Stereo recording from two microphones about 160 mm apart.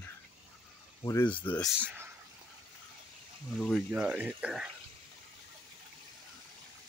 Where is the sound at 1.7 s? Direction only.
10° right (ahead or behind).